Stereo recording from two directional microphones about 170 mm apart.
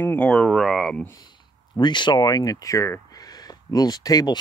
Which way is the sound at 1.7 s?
25° left (ahead or behind).